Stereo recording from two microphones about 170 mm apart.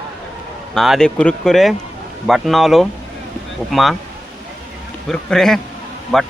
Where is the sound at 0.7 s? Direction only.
Centre (ahead or behind).